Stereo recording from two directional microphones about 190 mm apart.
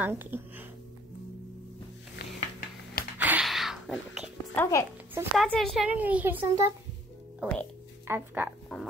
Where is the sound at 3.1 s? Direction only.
10° right (ahead or behind).